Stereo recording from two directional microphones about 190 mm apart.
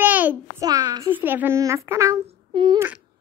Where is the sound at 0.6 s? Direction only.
20° right (ahead or behind).